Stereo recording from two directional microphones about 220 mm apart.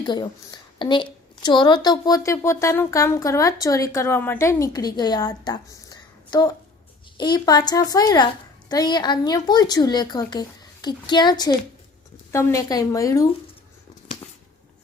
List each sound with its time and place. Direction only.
0.0 s a woman's voice: 20° left (ahead or behind)